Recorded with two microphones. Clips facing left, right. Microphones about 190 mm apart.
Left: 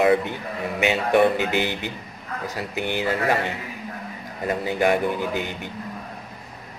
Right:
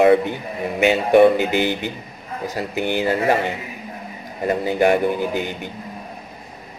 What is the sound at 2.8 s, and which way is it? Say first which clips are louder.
Speech: right 4 dB; 35° right (ahead or behind).